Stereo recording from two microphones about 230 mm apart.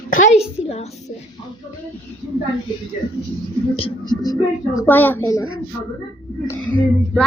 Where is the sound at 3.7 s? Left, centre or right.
Left.